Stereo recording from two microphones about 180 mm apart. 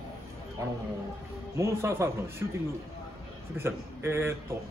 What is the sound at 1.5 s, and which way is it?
Speech, 15° right (ahead or behind).